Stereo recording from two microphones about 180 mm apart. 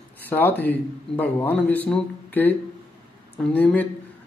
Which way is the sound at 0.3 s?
10° left (ahead or behind).